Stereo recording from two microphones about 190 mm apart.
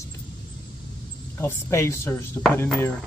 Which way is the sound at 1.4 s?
15° left (ahead or behind).